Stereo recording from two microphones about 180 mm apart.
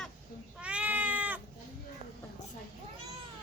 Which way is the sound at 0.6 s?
5° right (ahead or behind).